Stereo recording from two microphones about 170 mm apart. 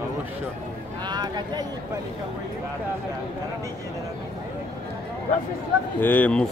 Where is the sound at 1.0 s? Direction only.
25° right (ahead or behind).